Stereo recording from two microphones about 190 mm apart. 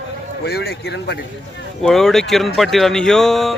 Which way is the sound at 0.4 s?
55° left (ahead or behind).